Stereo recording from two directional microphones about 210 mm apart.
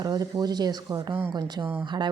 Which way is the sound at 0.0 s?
20° right (ahead or behind).